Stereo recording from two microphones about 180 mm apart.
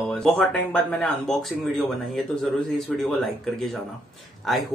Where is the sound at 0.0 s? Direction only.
5° left (ahead or behind).